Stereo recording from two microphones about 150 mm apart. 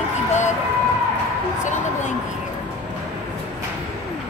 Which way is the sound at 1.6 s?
55° left (ahead or behind).